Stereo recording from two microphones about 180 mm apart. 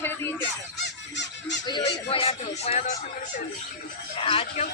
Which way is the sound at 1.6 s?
25° left (ahead or behind).